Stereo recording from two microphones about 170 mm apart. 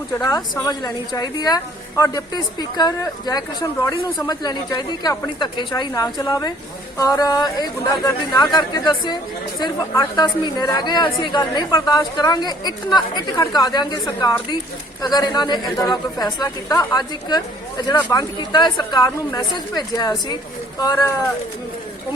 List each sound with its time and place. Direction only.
0.1 s a woman's voice: 15° left (ahead or behind)
15.0 s a woman's voice: 25° left (ahead or behind)